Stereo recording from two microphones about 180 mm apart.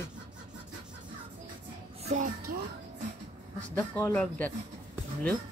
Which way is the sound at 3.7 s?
10° left (ahead or behind).